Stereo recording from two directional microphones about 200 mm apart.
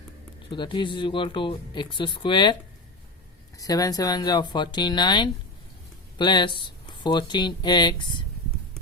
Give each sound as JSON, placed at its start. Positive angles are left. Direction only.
{"t": 0.5, "sound": "speech", "side_deg": 25}
{"t": 3.6, "sound": "speech", "side_deg": 20}